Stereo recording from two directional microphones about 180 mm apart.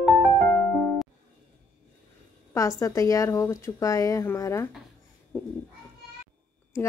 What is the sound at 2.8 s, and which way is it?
Speech, 20° left (ahead or behind).